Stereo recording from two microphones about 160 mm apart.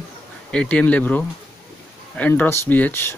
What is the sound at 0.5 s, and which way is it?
Speech, 5° left (ahead or behind).